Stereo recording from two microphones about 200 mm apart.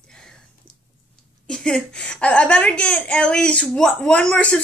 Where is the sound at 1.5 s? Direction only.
5° left (ahead or behind).